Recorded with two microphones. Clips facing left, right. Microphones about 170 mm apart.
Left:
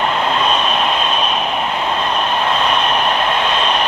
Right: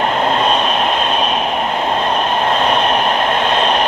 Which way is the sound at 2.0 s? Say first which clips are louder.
Right 2 dB; 40° right (ahead or behind).